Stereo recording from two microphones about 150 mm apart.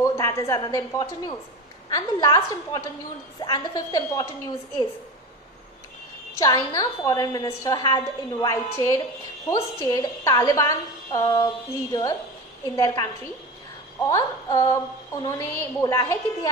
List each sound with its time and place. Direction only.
0.0 s a woman's voice: 20° left (ahead or behind)
6.3 s a woman's voice: 25° left (ahead or behind)